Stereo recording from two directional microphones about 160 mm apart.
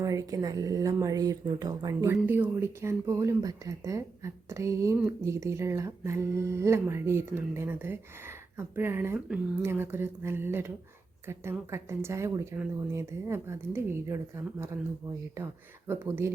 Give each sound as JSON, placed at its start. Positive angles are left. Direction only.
{"t": 0.0, "sound": "speech", "side_deg": -20}
{"t": 15.9, "sound": "speech", "side_deg": -15}